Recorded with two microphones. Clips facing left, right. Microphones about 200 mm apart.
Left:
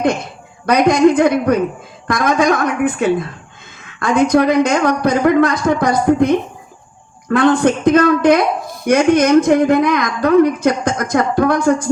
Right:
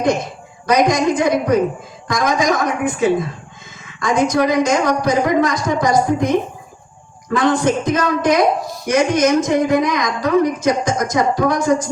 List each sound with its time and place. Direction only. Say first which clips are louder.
0.6 s speech: left 4 dB; 60° left (ahead or behind)
7.3 s speech: left 3 dB; 60° left (ahead or behind)